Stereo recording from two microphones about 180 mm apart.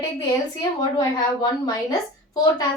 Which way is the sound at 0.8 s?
20° left (ahead or behind).